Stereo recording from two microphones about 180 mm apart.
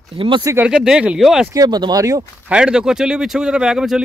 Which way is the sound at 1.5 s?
20° right (ahead or behind).